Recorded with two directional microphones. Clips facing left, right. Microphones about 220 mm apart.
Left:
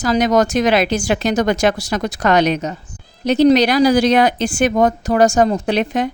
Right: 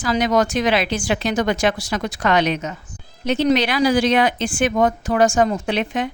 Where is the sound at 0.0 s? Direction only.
40° left (ahead or behind).